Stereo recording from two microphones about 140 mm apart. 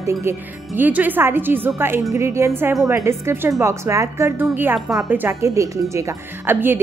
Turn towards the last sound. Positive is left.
turn(degrees=-15)  # may be behind; listen again after turning